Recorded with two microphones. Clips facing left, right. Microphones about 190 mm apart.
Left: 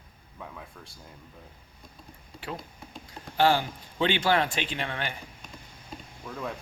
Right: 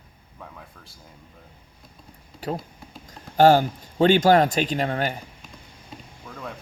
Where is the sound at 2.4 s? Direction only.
40° right (ahead or behind).